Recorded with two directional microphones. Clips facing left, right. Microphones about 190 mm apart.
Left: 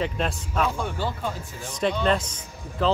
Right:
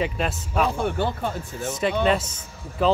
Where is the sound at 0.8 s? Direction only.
60° right (ahead or behind).